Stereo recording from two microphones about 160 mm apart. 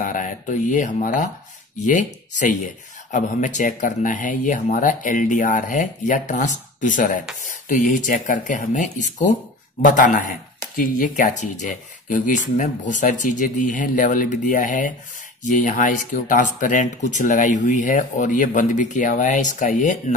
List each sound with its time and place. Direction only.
0.0 s speech: 55° left (ahead or behind)
2.3 s speech: 50° left (ahead or behind)